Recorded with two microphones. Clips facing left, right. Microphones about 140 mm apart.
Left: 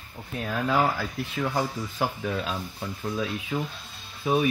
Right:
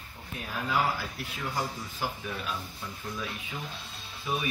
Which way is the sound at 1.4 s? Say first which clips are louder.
Left 6 dB; 70° left (ahead or behind).